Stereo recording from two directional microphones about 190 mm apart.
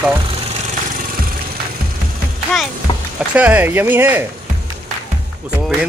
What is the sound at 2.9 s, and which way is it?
Music, 25° left (ahead or behind).